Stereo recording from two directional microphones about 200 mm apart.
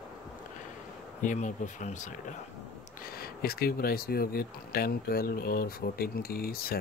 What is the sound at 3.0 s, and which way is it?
Speech, 50° left (ahead or behind).